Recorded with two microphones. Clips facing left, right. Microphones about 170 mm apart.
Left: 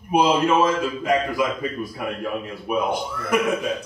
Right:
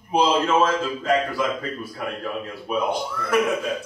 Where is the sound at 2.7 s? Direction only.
15° left (ahead or behind).